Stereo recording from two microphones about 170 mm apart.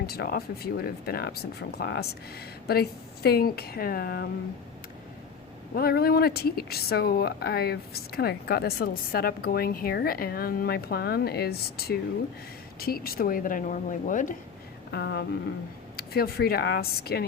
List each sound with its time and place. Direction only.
0.0 s speech: 65° left (ahead or behind)
3.2 s speech: 65° left (ahead or behind)
5.7 s speech: 65° left (ahead or behind)
14.9 s speech: 70° left (ahead or behind)